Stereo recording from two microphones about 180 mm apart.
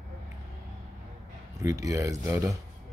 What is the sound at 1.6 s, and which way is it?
Speech, 20° right (ahead or behind).